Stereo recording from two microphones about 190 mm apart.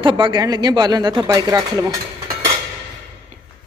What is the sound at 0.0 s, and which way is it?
Speech, 25° right (ahead or behind).